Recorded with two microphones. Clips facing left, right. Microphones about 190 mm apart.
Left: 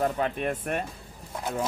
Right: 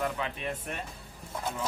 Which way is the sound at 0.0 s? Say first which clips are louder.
Left 6 dB; 45° left (ahead or behind).